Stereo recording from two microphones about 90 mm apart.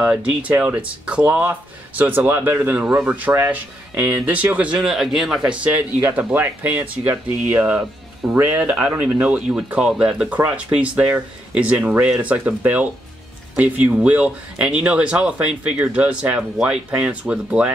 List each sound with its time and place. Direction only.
0.0 s speech: 10° right (ahead or behind)
4.7 s a man's voice: 5° right (ahead or behind)